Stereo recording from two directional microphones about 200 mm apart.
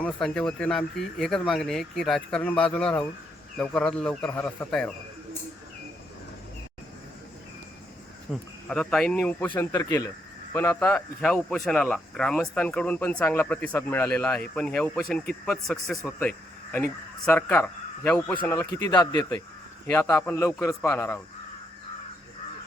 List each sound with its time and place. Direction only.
0.0 s speech: 5° left (ahead or behind)
8.3 s speech: 5° left (ahead or behind)
18.9 s speech: 20° left (ahead or behind)